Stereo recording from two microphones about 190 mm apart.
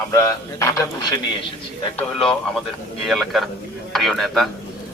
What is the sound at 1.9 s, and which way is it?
A man's voice, 5° left (ahead or behind).